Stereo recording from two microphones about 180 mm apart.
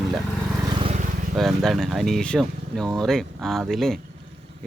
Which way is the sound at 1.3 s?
Centre (ahead or behind).